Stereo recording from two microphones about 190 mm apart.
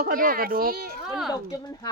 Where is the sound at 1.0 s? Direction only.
5° right (ahead or behind).